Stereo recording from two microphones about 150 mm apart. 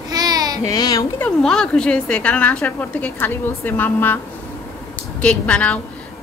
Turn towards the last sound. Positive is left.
turn(degrees=10)  # may be behind; listen again after turning